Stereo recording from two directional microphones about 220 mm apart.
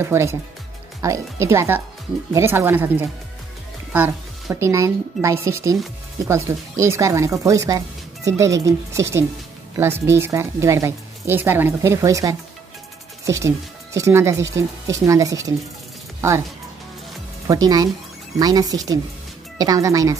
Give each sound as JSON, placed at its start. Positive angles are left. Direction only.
{"t": 0.0, "sound": "a woman's voice", "side_deg": -10}
{"t": 17.5, "sound": "speech", "side_deg": -15}